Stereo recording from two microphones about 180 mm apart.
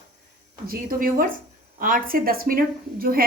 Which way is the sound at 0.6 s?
50° right (ahead or behind).